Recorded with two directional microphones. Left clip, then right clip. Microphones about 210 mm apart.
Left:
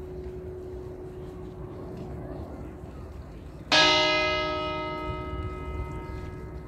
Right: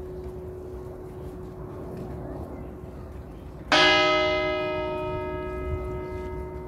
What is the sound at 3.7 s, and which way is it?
Music, 20° left (ahead or behind).